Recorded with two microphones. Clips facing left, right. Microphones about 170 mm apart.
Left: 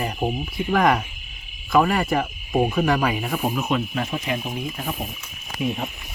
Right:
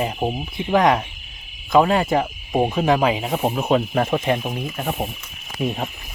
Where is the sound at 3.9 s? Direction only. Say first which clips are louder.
Right 7 dB; 50° right (ahead or behind).